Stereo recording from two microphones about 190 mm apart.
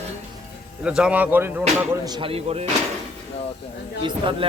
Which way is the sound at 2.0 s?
25° right (ahead or behind).